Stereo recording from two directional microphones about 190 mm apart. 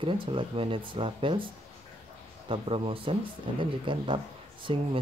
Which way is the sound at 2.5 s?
30° right (ahead or behind).